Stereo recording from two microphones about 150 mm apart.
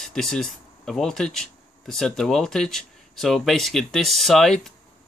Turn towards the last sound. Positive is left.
turn(degrees=0)  # may be behind; listen again after turning